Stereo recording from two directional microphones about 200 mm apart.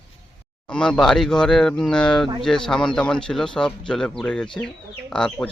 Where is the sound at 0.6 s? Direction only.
5° left (ahead or behind).